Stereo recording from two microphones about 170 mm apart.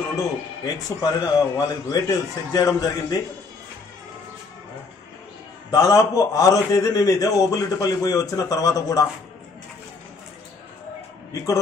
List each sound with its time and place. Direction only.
0.7 s a man's voice: 20° left (ahead or behind)
5.7 s a man's voice: 20° left (ahead or behind)